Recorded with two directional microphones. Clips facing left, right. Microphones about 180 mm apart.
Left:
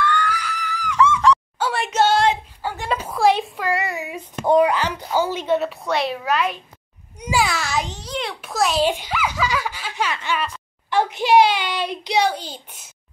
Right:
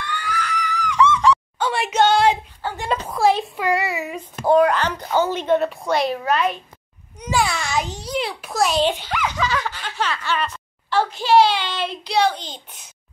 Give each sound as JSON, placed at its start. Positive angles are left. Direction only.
{"t": 0.0, "sound": "screaming", "side_deg": -10}
{"t": 0.3, "sound": "screaming", "side_deg": 5}
{"t": 2.8, "sound": "a sound", "side_deg": 5}
{"t": 3.9, "sound": "child singing", "side_deg": 0}
{"t": 4.6, "sound": "a woman's voice", "side_deg": 10}
{"t": 7.9, "sound": "a child's voice", "side_deg": -10}